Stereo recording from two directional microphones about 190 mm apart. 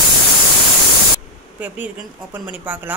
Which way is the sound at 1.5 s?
10° right (ahead or behind).